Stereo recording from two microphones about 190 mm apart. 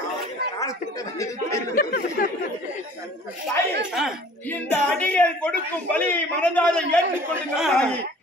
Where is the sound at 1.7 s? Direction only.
50° left (ahead or behind).